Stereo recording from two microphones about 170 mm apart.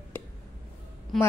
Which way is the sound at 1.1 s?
Centre (ahead or behind).